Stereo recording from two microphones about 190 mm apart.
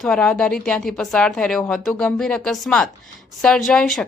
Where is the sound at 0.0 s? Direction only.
5° left (ahead or behind).